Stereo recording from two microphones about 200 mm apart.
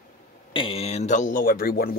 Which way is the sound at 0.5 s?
25° left (ahead or behind).